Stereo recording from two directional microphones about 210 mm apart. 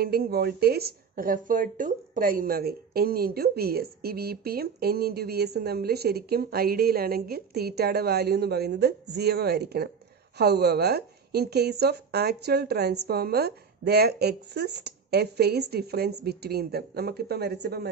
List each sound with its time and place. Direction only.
0.0 s speech: 50° right (ahead or behind)